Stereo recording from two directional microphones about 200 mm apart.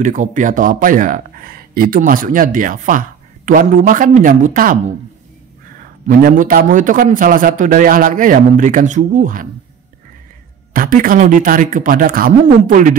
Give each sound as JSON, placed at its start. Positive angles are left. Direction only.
{"t": 0.0, "sound": "speech", "side_deg": -40}
{"t": 5.8, "sound": "speech", "side_deg": -45}
{"t": 10.7, "sound": "speech", "side_deg": -45}